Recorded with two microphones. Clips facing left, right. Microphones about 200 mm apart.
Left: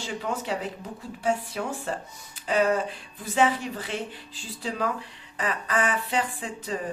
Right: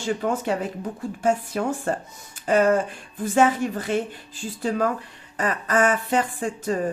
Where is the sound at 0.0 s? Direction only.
50° right (ahead or behind).